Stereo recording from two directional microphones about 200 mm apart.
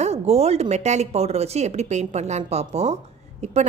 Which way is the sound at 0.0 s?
35° right (ahead or behind).